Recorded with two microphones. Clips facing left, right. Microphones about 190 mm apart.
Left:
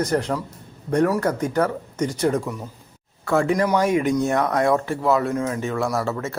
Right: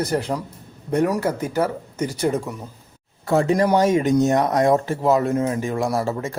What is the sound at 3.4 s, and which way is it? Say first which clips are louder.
Speech: right 4 dB; 30° right (ahead or behind).